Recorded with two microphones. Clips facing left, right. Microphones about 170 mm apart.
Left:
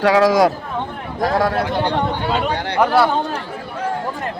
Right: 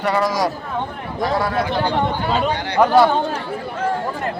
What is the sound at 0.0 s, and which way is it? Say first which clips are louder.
Speech: left 6 dB; 90° left.